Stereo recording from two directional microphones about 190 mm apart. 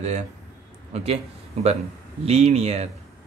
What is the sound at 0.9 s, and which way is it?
Speech, 30° right (ahead or behind).